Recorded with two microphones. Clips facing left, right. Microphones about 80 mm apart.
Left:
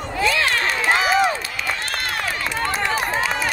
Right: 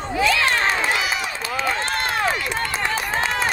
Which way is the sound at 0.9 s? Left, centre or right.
Left.